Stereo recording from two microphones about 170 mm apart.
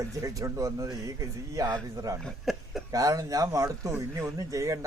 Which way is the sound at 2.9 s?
20° right (ahead or behind).